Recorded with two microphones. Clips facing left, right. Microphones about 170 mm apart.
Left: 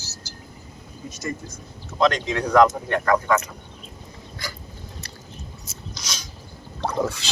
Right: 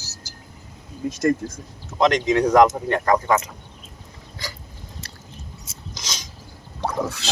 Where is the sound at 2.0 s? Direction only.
20° right (ahead or behind).